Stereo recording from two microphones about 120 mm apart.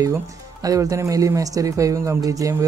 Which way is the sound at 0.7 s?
30° right (ahead or behind).